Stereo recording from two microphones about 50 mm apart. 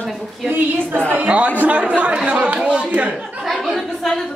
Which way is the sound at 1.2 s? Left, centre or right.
Right.